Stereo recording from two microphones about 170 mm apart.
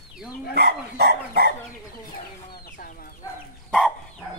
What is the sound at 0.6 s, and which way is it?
Dog, 70° right (ahead or behind).